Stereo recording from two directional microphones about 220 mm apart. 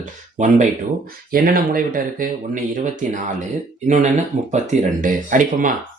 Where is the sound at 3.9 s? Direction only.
35° right (ahead or behind).